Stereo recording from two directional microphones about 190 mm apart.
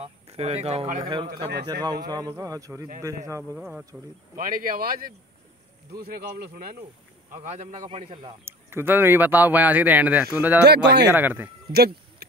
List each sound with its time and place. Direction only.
0.0 s speech: 30° right (ahead or behind)
1.3 s speech: 60° right (ahead or behind)
1.7 s a man's voice: 20° right (ahead or behind)
3.5 s speech: 5° right (ahead or behind)
4.4 s speech: 50° right (ahead or behind)
7.5 s a man's voice: 35° right (ahead or behind)
8.5 s speech: 10° right (ahead or behind)
10.6 s speech: 60° right (ahead or behind)
11.1 s speech: 10° right (ahead or behind)
11.7 s a sound: 55° right (ahead or behind)